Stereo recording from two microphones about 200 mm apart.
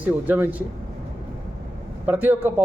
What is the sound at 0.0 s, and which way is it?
Speech, 10° right (ahead or behind).